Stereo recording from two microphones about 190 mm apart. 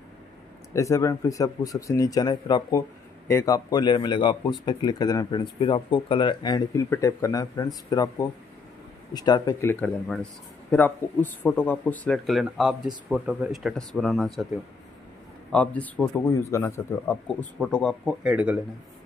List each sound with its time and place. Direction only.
0.7 s speech: 15° left (ahead or behind); by 14.5 s centre (ahead or behind)
15.5 s speech: 5° left (ahead or behind)